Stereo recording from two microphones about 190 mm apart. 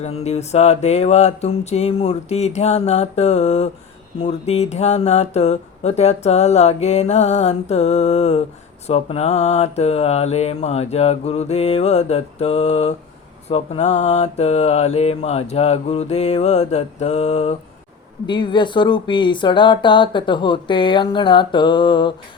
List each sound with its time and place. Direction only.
0.0 s speech: 35° left (ahead or behind)
18.3 s speech: 25° left (ahead or behind)